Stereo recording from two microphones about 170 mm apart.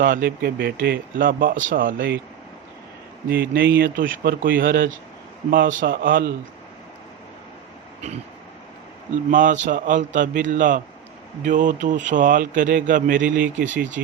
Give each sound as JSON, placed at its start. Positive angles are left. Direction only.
{"t": 0.0, "sound": "speech", "side_deg": -55}
{"t": 3.2, "sound": "speech", "side_deg": -60}
{"t": 9.3, "sound": "speech", "side_deg": -50}